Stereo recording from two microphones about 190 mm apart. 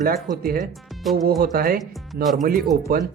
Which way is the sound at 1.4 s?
50° right (ahead or behind).